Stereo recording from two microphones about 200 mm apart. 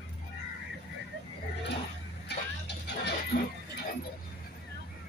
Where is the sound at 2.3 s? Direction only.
55° left (ahead or behind).